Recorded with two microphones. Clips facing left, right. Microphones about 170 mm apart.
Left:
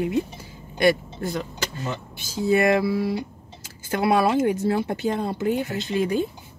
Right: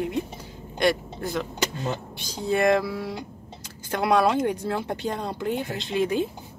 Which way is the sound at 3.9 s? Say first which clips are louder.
Left 1 dB; 5° left (ahead or behind).